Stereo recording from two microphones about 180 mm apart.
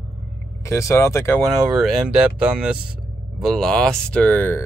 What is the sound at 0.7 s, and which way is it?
Speech, 15° left (ahead or behind).